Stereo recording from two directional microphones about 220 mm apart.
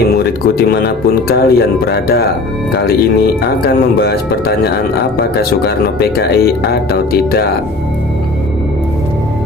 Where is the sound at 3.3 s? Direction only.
45° left (ahead or behind).